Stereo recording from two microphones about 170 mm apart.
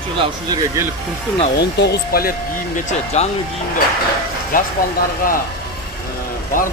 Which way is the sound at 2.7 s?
45° left (ahead or behind).